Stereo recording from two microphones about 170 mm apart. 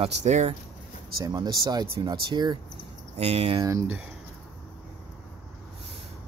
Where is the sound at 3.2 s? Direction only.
35° right (ahead or behind).